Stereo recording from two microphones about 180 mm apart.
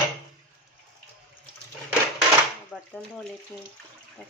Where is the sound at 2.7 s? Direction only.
5° left (ahead or behind).